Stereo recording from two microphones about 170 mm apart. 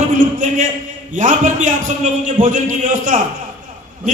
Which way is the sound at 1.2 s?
50° right (ahead or behind).